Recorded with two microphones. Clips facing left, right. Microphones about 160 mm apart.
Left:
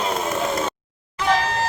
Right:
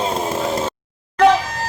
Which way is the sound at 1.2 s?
70° right (ahead or behind).